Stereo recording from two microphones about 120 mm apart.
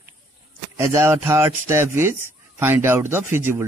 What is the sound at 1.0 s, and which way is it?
A man's voice, 20° right (ahead or behind).